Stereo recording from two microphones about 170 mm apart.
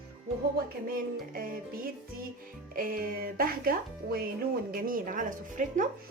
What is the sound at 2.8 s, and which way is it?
Speech, 60° right (ahead or behind).